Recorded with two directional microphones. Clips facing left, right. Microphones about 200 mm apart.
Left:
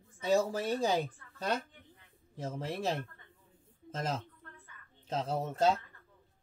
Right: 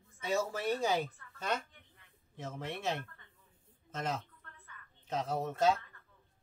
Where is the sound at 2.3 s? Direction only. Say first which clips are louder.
Left 4 dB; 35° left (ahead or behind).